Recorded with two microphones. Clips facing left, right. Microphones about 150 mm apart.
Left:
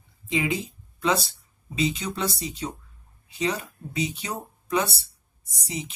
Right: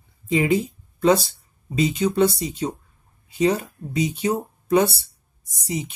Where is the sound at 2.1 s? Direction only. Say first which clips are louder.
Right 10 dB; 50° right (ahead or behind).